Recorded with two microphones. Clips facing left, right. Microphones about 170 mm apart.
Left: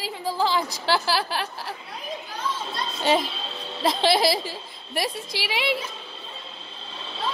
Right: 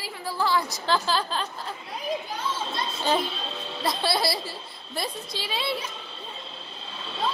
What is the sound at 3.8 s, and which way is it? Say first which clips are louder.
A woman's voice: left 5 dB; 90° left.